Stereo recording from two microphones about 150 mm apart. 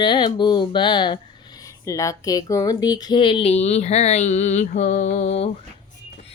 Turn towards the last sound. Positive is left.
turn(degrees=50)  # may be behind; listen again after turning